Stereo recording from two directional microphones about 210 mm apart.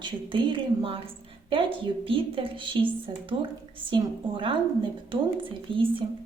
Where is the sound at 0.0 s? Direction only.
25° right (ahead or behind).